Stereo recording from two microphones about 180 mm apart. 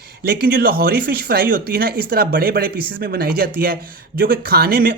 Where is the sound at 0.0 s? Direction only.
60° right (ahead or behind).